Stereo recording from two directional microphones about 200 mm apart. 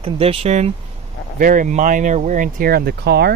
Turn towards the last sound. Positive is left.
turn(degrees=-55)  # may be behind; listen again after turning